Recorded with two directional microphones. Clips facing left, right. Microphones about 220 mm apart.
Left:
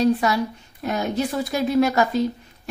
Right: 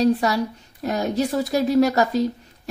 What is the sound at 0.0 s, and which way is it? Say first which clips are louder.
A woman's voice: even; 35° right (ahead or behind).